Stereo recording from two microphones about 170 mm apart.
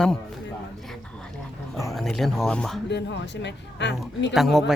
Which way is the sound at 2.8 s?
90° left.